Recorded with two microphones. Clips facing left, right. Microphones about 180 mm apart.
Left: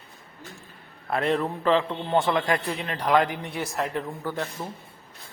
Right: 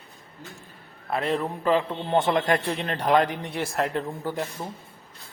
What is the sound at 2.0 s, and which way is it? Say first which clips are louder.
Speech: right 2 dB; 20° right (ahead or behind).